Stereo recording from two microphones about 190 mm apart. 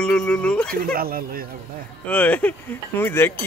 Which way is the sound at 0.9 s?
50° right (ahead or behind).